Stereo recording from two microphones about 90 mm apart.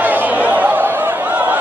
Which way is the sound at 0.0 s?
20° right (ahead or behind).